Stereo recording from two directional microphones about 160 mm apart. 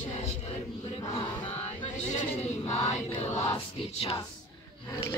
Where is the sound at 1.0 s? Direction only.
25° left (ahead or behind).